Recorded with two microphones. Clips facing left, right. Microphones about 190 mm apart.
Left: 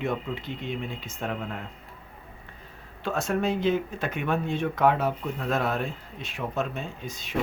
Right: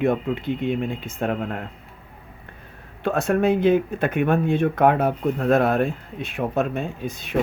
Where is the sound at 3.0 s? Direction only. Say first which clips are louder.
Right 7 dB; 60° right (ahead or behind).